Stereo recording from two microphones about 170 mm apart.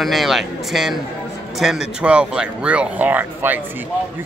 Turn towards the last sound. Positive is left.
turn(degrees=-10)  # may be behind; listen again after turning